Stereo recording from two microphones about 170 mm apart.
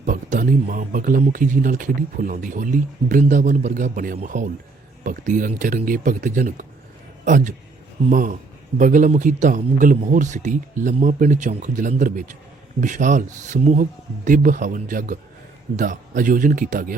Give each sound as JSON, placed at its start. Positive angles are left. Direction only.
{"t": 0.0, "sound": "speech", "side_deg": -50}